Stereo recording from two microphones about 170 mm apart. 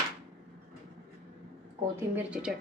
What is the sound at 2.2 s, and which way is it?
Speech, 5° right (ahead or behind).